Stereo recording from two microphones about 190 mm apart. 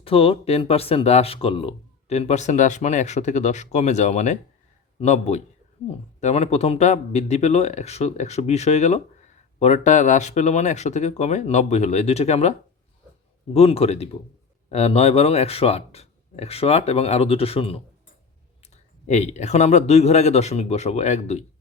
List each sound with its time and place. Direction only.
0.0 s speech: 30° left (ahead or behind)